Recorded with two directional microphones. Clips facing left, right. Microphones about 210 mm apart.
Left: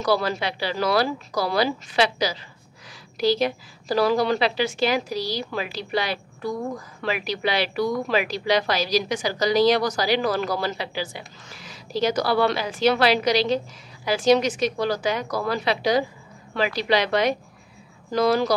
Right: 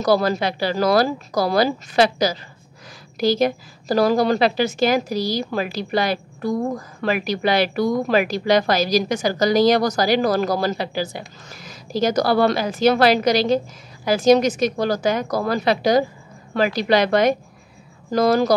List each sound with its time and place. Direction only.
0.0 s a woman's voice: 40° right (ahead or behind)